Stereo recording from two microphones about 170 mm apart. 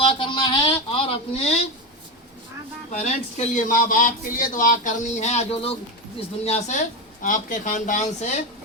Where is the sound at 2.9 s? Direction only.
40° left (ahead or behind).